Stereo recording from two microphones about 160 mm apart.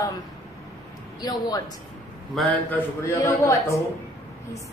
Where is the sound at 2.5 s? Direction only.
10° left (ahead or behind).